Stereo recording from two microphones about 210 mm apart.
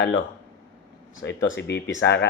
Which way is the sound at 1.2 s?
55° left (ahead or behind).